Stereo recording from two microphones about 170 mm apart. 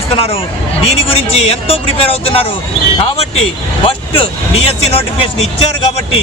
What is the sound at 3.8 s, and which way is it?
Speech, 35° left (ahead or behind).